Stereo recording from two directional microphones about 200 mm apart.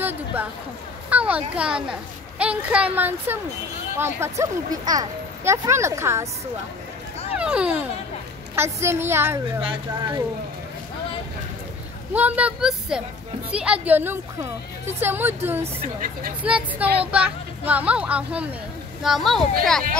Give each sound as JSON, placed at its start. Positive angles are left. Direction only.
{"t": 0.0, "sound": "a sound", "side_deg": -10}
{"t": 1.1, "sound": "children playing", "side_deg": -5}
{"t": 1.5, "sound": "speech", "side_deg": -5}
{"t": 7.3, "sound": "speech", "side_deg": -5}
{"t": 9.6, "sound": "speech", "side_deg": -25}
{"t": 12.1, "sound": "speech", "side_deg": -10}